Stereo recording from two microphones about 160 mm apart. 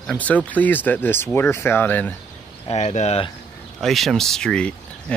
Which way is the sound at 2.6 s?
45° left (ahead or behind).